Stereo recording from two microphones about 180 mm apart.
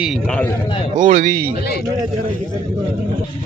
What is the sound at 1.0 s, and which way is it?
Speech, 45° right (ahead or behind).